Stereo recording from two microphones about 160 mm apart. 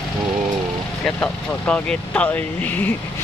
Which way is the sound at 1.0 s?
10° left (ahead or behind).